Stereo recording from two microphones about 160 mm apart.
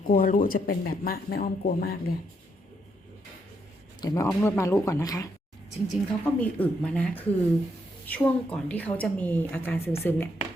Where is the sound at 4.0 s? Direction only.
20° left (ahead or behind).